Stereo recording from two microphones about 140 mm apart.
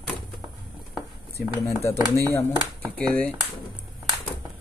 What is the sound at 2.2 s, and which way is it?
Speech, 15° left (ahead or behind).